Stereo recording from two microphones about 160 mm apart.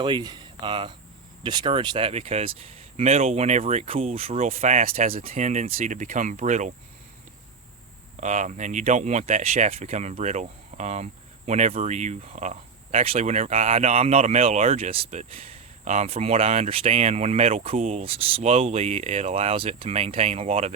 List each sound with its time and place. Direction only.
0.0 s speech: 25° right (ahead or behind); by 6.7 s 50° right (ahead or behind)
8.1 s speech: 50° right (ahead or behind)